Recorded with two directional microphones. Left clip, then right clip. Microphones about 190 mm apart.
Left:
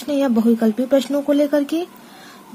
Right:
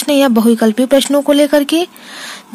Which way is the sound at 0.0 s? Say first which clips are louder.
Right 8 dB; 15° right (ahead or behind).